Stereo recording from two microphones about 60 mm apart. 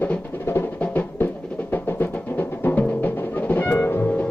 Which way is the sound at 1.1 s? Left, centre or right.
Left.